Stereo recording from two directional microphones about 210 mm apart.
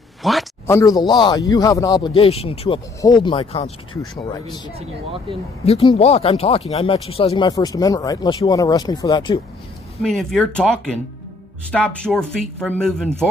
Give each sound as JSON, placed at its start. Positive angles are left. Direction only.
{"t": 0.2, "sound": "speech", "side_deg": 0}
{"t": 0.7, "sound": "speech", "side_deg": 15}
{"t": 4.7, "sound": "speech", "side_deg": -25}
{"t": 5.7, "sound": "speech", "side_deg": 25}
{"t": 10.0, "sound": "speech", "side_deg": 5}
{"t": 11.7, "sound": "speech", "side_deg": 5}